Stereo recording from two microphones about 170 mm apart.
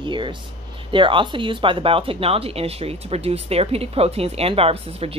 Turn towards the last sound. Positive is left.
turn(degrees=-35)  # may be behind; listen again after turning